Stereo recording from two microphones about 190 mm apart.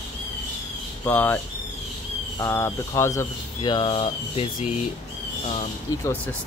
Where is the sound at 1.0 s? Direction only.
10° left (ahead or behind).